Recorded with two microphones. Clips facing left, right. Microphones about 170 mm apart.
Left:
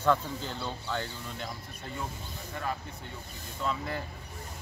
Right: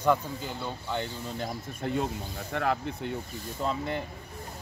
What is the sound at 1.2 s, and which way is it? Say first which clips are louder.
Speech: right 5 dB; 40° right (ahead or behind).